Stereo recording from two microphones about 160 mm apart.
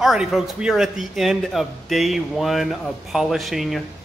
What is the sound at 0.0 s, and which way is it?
A man's voice, 5° right (ahead or behind).